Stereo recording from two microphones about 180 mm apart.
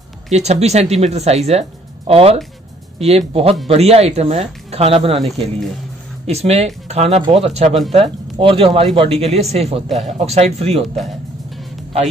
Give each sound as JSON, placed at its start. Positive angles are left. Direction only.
{"t": 0.3, "sound": "speech", "side_deg": -40}
{"t": 5.2, "sound": "speech", "side_deg": 0}
{"t": 6.2, "sound": "speech", "side_deg": -35}
{"t": 9.8, "sound": "speech", "side_deg": 0}
{"t": 10.1, "sound": "speech", "side_deg": -35}